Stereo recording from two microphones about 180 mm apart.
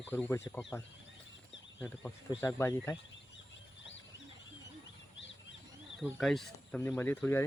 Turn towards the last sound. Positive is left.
turn(degrees=15)  # may be behind; listen again after turning